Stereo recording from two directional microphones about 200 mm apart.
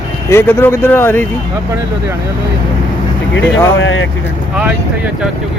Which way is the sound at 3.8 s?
70° left (ahead or behind).